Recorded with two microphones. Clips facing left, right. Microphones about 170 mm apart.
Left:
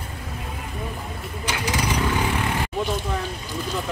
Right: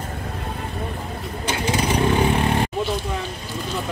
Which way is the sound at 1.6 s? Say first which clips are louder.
Right 4 dB; 25° right (ahead or behind).